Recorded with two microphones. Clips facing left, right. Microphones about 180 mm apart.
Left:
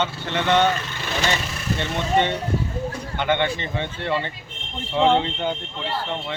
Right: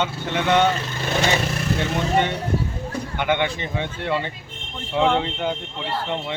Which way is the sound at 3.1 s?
10° right (ahead or behind).